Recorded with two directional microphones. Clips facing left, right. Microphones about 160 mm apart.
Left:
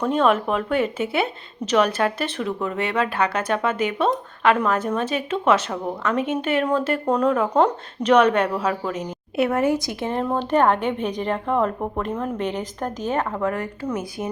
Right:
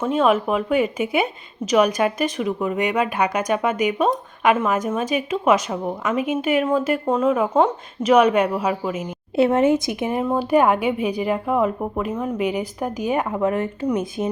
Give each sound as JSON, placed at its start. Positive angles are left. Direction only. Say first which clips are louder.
{"t": 0.0, "sound": "a woman's voice", "louder": "right 1 dB", "side_deg": -5}
{"t": 9.3, "sound": "a woman's voice", "louder": "right 4 dB", "side_deg": -25}